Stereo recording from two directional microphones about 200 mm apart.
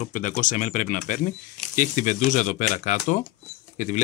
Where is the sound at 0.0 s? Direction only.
40° left (ahead or behind).